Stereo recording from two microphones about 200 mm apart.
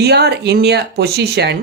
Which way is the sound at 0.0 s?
55° right (ahead or behind).